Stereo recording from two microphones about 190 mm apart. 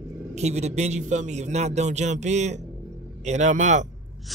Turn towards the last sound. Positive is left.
turn(degrees=-40)  # may be behind; listen again after turning